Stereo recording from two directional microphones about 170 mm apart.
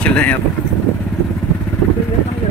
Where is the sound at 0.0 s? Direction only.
5° left (ahead or behind).